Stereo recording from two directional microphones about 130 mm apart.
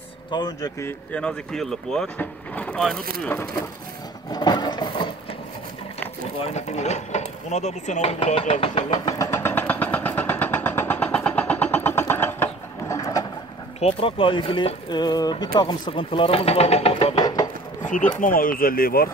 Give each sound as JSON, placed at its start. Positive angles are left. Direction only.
{"t": 0.3, "sound": "speech", "side_deg": 35}
{"t": 1.1, "sound": "speech", "side_deg": 5}
{"t": 4.3, "sound": "sewing machine", "side_deg": 30}
{"t": 6.4, "sound": "a sound", "side_deg": 60}
{"t": 13.7, "sound": "speech", "side_deg": 45}
{"t": 17.1, "sound": "wood", "side_deg": 30}
{"t": 17.8, "sound": "speech", "side_deg": 75}
{"t": 18.2, "sound": "speech", "side_deg": 90}